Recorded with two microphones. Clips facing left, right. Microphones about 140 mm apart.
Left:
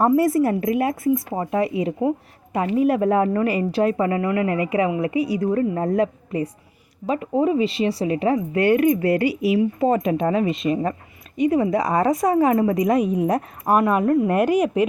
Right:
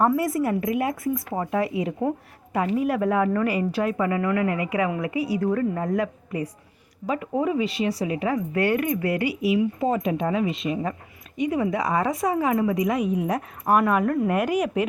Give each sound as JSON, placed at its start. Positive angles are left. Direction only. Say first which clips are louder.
{"t": 0.2, "sound": "a woman's voice", "louder": "left 5 dB", "side_deg": 30}
{"t": 1.3, "sound": "speech", "louder": "left 3 dB", "side_deg": 20}
{"t": 2.0, "sound": "a woman's voice", "louder": "left 4 dB", "side_deg": 10}
{"t": 2.6, "sound": "speech", "louder": "left 4 dB", "side_deg": 25}
{"t": 5.7, "sound": "speech", "louder": "left 4 dB", "side_deg": 35}
{"t": 9.8, "sound": "a woman's voice", "louder": "left 4 dB", "side_deg": 50}